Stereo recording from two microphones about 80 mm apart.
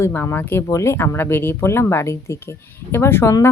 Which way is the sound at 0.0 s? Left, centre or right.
Left.